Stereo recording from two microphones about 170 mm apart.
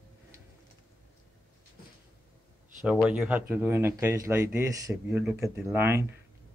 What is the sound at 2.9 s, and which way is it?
Speech, 5° right (ahead or behind).